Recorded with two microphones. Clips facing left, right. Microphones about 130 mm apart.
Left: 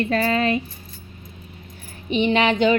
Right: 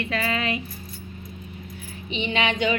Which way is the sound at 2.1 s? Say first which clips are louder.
Left 7 dB; 50° left (ahead or behind).